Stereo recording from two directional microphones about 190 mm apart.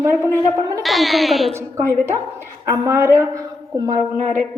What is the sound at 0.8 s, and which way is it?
Speech, centre (ahead or behind).